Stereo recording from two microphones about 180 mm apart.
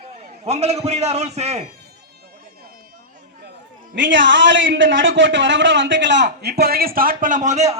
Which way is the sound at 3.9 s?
90° right.